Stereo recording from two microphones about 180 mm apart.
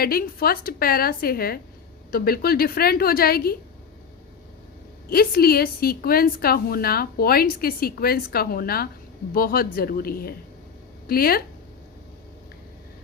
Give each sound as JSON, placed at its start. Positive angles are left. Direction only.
{"t": 0.0, "sound": "a woman's voice", "side_deg": 55}
{"t": 5.0, "sound": "a woman's voice", "side_deg": 55}